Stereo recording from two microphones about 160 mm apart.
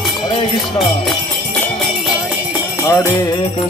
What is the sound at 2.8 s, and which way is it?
Music, 15° left (ahead or behind).